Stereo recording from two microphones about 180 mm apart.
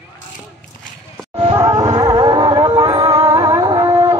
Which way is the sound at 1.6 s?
20° right (ahead or behind).